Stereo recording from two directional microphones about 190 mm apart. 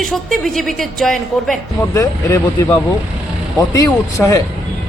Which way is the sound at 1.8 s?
15° left (ahead or behind).